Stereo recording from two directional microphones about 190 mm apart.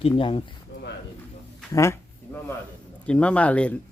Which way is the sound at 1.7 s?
15° left (ahead or behind).